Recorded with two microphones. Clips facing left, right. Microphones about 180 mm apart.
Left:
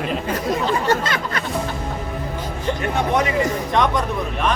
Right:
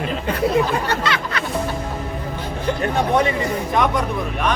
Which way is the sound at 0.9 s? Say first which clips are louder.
Left 1 dB; 45° left (ahead or behind).